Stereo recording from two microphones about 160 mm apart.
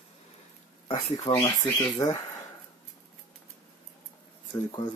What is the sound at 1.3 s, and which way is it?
Speech, 30° left (ahead or behind).